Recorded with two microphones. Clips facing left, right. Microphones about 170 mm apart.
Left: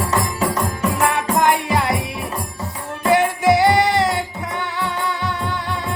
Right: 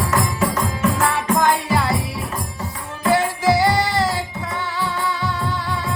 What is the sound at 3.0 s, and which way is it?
Music, 20° left (ahead or behind).